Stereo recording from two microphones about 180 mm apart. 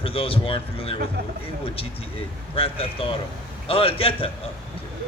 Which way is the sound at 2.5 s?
30° left (ahead or behind).